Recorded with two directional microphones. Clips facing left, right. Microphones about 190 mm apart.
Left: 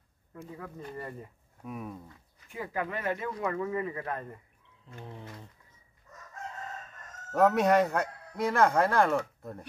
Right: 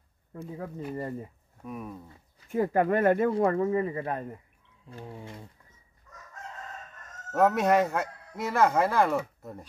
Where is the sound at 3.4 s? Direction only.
35° right (ahead or behind).